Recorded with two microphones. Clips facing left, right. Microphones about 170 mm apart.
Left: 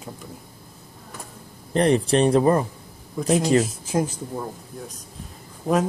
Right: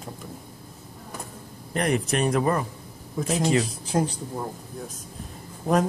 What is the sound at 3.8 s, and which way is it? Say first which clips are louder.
Speech: left 1 dB; 5° left (ahead or behind).